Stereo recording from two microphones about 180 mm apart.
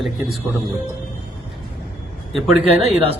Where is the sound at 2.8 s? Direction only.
35° right (ahead or behind).